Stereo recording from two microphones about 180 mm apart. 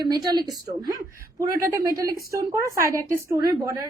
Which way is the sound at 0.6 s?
20° right (ahead or behind).